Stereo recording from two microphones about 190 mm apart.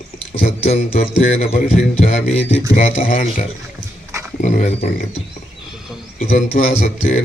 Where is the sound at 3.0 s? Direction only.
45° left (ahead or behind).